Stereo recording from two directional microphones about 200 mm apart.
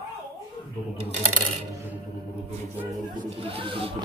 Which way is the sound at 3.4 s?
25° right (ahead or behind).